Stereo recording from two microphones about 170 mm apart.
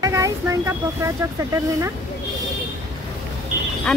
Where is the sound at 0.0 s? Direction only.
20° right (ahead or behind).